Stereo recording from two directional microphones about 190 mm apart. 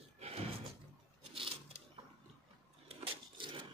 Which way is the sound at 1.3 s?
30° right (ahead or behind).